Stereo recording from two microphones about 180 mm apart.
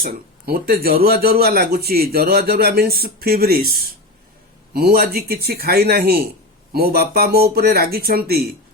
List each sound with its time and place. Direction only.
0.0 s speech: 55° right (ahead or behind)